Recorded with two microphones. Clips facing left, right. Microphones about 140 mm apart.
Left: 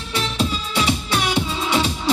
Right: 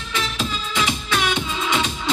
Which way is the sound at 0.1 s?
35° left (ahead or behind).